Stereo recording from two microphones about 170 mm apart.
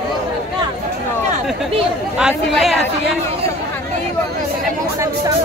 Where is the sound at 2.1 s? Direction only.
5° right (ahead or behind).